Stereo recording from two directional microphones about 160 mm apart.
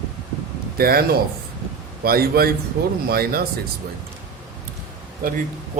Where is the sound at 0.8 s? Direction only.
70° right (ahead or behind).